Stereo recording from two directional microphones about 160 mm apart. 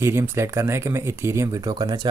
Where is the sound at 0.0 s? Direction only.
15° right (ahead or behind).